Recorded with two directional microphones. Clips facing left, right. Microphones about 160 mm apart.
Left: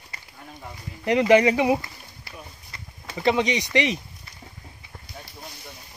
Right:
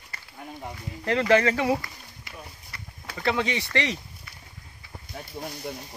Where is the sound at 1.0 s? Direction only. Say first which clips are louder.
Left 4 dB; 15° left (ahead or behind).